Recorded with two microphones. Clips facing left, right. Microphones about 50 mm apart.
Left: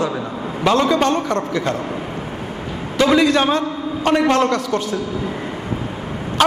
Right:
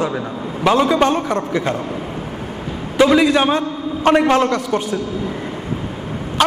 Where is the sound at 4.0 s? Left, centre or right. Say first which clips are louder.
Right 3 dB; right.